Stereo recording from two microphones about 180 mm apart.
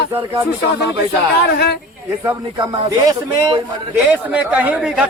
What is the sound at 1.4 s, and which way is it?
Speech, 65° left (ahead or behind).